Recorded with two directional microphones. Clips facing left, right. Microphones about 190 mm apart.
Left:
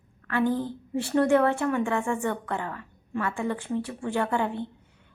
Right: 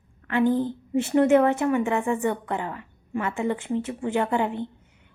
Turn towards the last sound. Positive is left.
turn(degrees=-15)  # may be behind; listen again after turning